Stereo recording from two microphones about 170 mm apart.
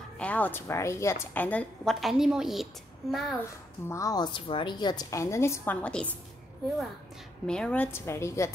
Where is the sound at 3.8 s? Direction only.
20° left (ahead or behind).